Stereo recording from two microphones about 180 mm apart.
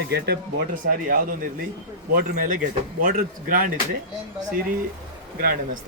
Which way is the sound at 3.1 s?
50° right (ahead or behind).